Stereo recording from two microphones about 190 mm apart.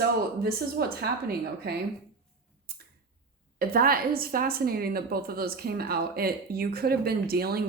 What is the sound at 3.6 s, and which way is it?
A woman's voice, 50° right (ahead or behind).